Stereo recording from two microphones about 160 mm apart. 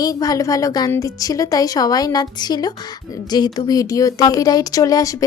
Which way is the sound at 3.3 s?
20° left (ahead or behind).